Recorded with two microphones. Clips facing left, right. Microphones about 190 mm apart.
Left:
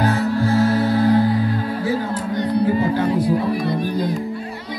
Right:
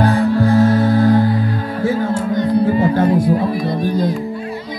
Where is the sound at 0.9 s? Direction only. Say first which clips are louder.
Right 3 dB; 45° right (ahead or behind).